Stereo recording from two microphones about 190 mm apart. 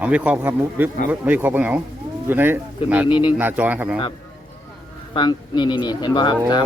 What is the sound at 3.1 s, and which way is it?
Speech, 25° left (ahead or behind).